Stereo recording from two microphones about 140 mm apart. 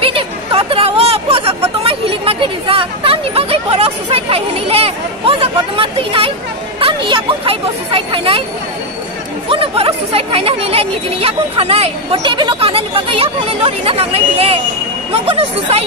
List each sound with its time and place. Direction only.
0.0 s chatter: 40° right (ahead or behind)
6.8 s a sound: 40° right (ahead or behind)
9.5 s speech: 40° right (ahead or behind)